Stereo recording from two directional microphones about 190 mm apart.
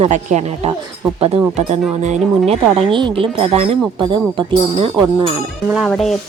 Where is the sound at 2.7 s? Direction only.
30° right (ahead or behind).